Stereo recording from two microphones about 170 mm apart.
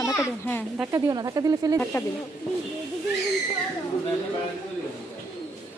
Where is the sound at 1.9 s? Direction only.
15° left (ahead or behind).